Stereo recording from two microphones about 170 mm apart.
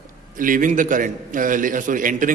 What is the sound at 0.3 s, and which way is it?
A man's voice, 50° right (ahead or behind).